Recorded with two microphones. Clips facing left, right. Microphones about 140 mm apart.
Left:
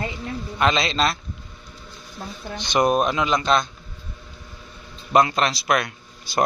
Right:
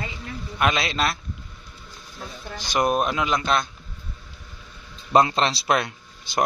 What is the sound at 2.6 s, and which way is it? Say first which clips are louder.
Speech: left 3 dB; 5° right (ahead or behind).